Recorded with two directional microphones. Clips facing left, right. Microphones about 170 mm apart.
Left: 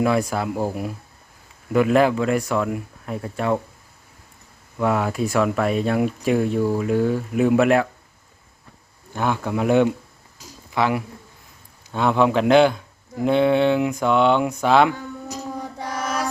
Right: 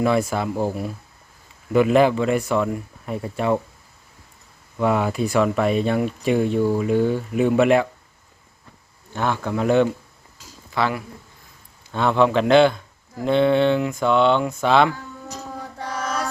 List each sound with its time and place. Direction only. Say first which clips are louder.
0.0 s speech: even; centre (ahead or behind)
4.8 s speech: right 1 dB; centre (ahead or behind)
9.1 s speech: even; 10° left (ahead or behind)
10.3 s a sound: left 1 dB; 15° left (ahead or behind)
11.9 s speech: even; 10° left (ahead or behind)
15.8 s mantra: even; 10° left (ahead or behind)